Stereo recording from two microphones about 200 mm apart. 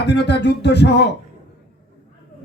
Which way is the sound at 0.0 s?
60° left (ahead or behind).